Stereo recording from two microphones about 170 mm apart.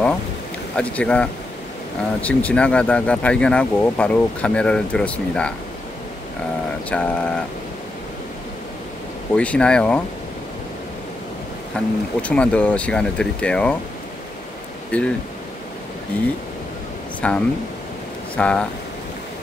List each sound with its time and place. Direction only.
0.7 s speech: 5° left (ahead or behind)
6.9 s speech: 10° left (ahead or behind)
9.3 s speech: 5° left (ahead or behind)
11.7 s speech: 5° left (ahead or behind)
14.9 s speech: 10° left (ahead or behind)
17.2 s speech: 5° left (ahead or behind)